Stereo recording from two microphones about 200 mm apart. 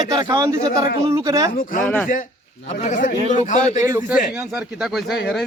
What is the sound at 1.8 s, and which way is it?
Speech, 10° left (ahead or behind).